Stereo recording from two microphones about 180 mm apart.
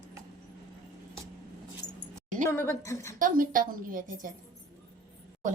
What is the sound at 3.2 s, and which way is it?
Speech, 50° right (ahead or behind).